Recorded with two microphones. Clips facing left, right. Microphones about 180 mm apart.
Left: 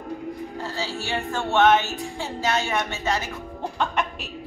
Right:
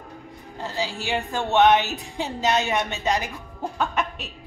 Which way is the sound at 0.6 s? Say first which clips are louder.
Right 5 dB; 20° right (ahead or behind).